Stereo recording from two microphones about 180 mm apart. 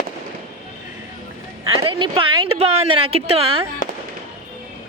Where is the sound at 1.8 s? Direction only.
30° right (ahead or behind).